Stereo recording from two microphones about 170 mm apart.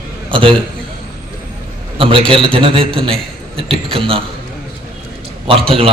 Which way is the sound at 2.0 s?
30° right (ahead or behind).